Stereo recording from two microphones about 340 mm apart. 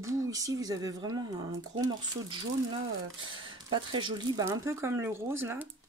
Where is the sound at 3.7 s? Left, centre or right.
Centre.